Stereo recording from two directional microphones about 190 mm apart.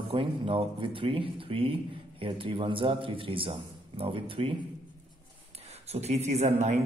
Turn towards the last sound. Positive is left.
turn(degrees=-35)  # may be behind; listen again after turning